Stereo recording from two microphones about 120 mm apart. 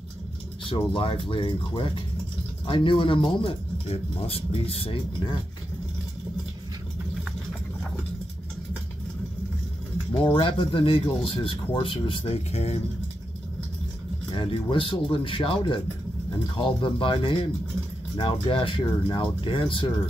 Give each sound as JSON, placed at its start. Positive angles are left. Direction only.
{"t": 0.7, "sound": "speech", "side_deg": 45}
{"t": 10.1, "sound": "speech", "side_deg": 50}
{"t": 14.3, "sound": "speech", "side_deg": 45}